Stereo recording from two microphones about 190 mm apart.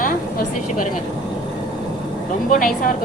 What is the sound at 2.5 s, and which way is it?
Speech, 45° left (ahead or behind).